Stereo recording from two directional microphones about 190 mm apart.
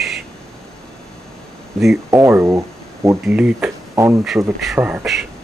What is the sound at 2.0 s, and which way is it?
Speech, 15° right (ahead or behind).